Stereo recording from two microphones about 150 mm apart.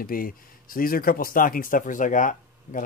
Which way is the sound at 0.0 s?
75° left (ahead or behind).